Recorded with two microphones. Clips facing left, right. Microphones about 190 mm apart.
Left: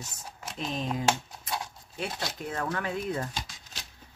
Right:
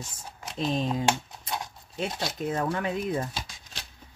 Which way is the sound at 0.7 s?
30° right (ahead or behind).